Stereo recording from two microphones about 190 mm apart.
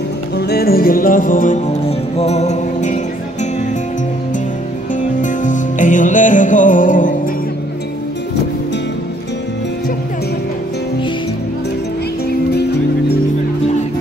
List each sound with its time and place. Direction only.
0.4 s music: 55° left (ahead or behind); by 3.0 s 40° left (ahead or behind)
5.2 s music: 40° left (ahead or behind)
12.3 s music: 60° left (ahead or behind)